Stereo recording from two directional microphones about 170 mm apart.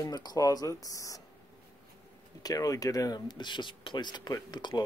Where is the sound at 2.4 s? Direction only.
20° left (ahead or behind).